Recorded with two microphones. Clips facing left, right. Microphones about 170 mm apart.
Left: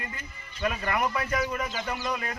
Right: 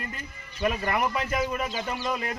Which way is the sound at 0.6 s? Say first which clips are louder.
Right 2 dB; 25° right (ahead or behind).